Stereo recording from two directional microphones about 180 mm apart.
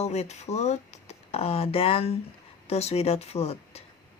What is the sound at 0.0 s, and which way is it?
Speech, 40° left (ahead or behind).